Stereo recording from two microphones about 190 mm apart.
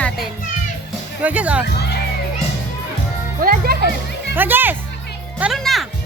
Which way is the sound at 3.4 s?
50° right (ahead or behind).